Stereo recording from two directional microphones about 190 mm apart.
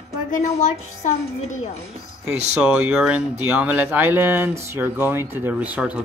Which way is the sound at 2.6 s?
5° right (ahead or behind).